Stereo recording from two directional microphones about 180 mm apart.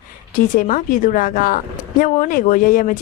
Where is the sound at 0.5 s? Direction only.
45° left (ahead or behind).